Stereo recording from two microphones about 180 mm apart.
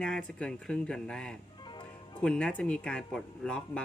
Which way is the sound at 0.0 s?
5° left (ahead or behind).